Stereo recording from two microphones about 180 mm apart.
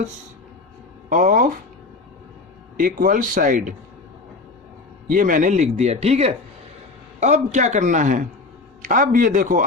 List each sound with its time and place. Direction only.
1.1 s speech: 45° right (ahead or behind)
2.7 s speech: 50° right (ahead or behind)
5.0 s speech: 50° right (ahead or behind)